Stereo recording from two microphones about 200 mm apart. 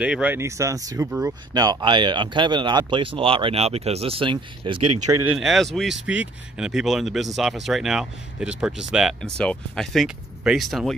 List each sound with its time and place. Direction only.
0.0 s speech: 5° right (ahead or behind); by 4.7 s 25° right (ahead or behind)
5.2 s speech: 5° right (ahead or behind)